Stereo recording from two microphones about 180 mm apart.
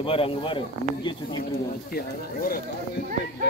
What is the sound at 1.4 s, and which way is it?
Speech, 55° left (ahead or behind).